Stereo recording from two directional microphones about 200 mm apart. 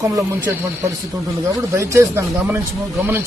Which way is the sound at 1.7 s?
15° right (ahead or behind).